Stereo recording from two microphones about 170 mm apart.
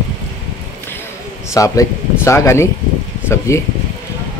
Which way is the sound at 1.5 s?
20° left (ahead or behind).